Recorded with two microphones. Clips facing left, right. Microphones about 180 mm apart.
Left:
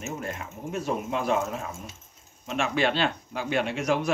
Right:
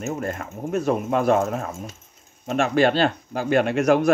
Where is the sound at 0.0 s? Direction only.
50° right (ahead or behind).